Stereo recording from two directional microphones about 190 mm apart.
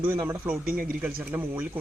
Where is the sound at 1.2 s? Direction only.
10° right (ahead or behind).